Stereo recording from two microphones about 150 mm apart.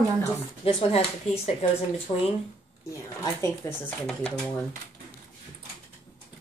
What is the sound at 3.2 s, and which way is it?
Speech, 15° left (ahead or behind).